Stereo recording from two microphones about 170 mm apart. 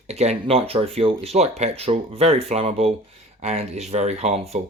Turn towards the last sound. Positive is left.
turn(degrees=-40)  # may be behind; listen again after turning